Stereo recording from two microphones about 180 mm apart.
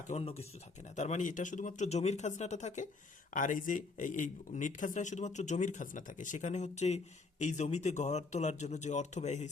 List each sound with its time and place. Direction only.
0.1 s speech: 35° left (ahead or behind)